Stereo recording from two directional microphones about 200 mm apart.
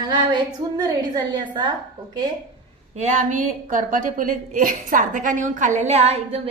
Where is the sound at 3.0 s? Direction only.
35° right (ahead or behind).